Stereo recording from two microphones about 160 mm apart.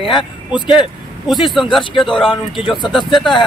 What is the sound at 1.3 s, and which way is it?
Speech, centre (ahead or behind).